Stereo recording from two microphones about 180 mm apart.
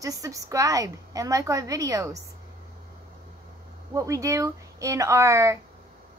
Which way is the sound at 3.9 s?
20° right (ahead or behind).